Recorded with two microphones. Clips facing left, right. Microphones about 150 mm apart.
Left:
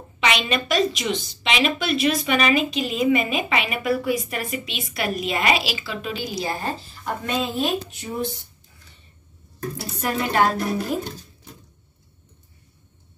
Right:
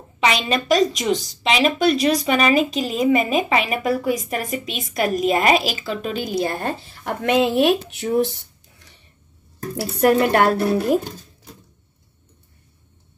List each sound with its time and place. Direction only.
0.2 s a woman's voice: 35° right (ahead or behind); by 8.9 s 80° right
9.8 s a woman's voice: 60° right (ahead or behind)